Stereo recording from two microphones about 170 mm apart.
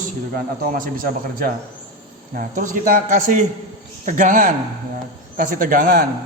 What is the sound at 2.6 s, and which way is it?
A man's voice, 50° right (ahead or behind).